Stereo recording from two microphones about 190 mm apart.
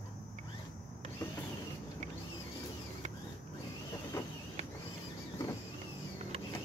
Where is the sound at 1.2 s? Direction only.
15° left (ahead or behind).